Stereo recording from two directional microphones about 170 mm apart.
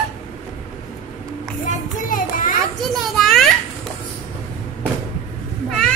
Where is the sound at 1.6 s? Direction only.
50° left (ahead or behind).